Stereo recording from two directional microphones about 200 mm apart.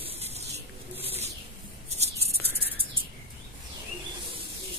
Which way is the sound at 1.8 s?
30° right (ahead or behind).